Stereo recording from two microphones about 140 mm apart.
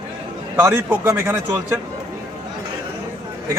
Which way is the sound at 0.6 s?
15° right (ahead or behind).